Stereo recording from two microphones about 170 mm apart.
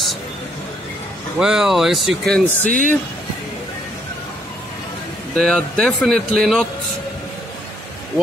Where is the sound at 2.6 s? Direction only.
55° right (ahead or behind).